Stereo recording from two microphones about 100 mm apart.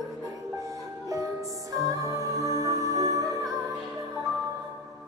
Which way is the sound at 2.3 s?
30° right (ahead or behind).